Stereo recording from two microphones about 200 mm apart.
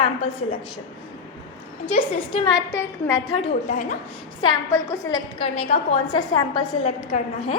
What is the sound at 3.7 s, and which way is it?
Speech, 40° left (ahead or behind).